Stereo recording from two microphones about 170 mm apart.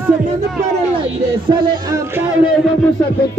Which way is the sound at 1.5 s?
25° right (ahead or behind).